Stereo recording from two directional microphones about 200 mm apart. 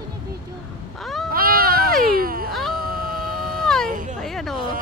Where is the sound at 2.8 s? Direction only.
45° right (ahead or behind).